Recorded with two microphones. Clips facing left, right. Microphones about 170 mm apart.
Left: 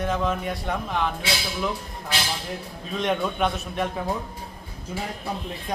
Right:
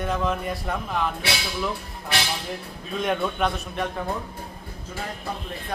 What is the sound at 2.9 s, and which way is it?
Speech, centre (ahead or behind).